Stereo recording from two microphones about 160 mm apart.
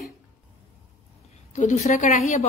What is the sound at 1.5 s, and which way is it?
Speech, 50° left (ahead or behind).